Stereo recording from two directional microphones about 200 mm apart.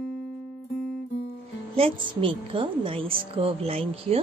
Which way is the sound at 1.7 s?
25° right (ahead or behind).